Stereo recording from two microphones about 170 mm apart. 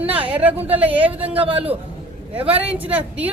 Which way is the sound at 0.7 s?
10° right (ahead or behind).